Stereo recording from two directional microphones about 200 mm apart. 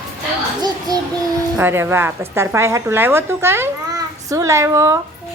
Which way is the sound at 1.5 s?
10° right (ahead or behind).